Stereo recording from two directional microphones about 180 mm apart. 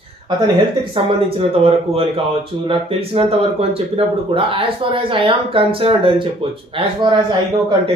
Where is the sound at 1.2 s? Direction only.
30° right (ahead or behind).